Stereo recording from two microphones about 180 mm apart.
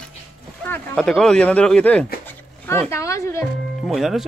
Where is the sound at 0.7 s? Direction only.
Centre (ahead or behind).